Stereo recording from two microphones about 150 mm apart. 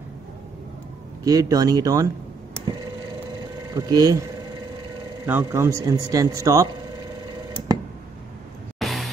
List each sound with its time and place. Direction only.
1.2 s a man's voice: 25° right (ahead or behind)
3.7 s a man's voice: 25° right (ahead or behind)
5.2 s a man's voice: 15° right (ahead or behind)
8.7 s vehicle: centre (ahead or behind)